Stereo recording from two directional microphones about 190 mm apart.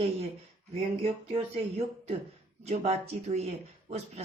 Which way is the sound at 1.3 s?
30° right (ahead or behind).